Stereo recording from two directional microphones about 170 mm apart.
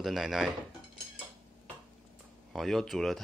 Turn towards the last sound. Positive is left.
turn(degrees=0)  # may be behind; listen again after turning